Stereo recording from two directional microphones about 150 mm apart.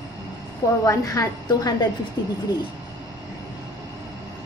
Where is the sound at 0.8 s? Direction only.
25° left (ahead or behind).